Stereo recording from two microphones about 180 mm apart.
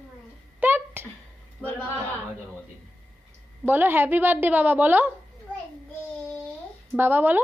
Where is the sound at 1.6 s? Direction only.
10° left (ahead or behind).